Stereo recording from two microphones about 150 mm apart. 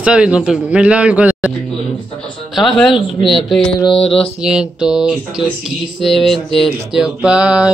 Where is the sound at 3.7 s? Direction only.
35° left (ahead or behind).